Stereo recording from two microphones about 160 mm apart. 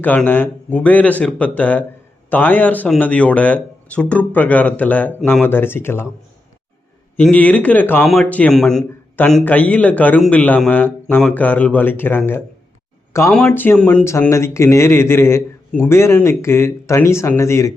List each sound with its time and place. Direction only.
0.0 s a man's voice: 10° left (ahead or behind)
7.2 s a man's voice: 10° left (ahead or behind)
13.4 s a man's voice: 15° left (ahead or behind)